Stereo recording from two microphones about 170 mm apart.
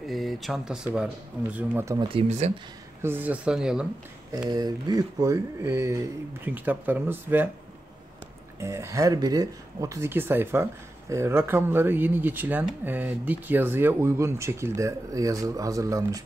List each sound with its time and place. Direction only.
0.0 s speech: centre (ahead or behind)
1.9 s speech: 25° right (ahead or behind)
2.2 s speech: 40° right (ahead or behind)
3.0 s speech: 10° right (ahead or behind)
4.5 s speech: 25° right (ahead or behind)
8.5 s speech: 15° right (ahead or behind)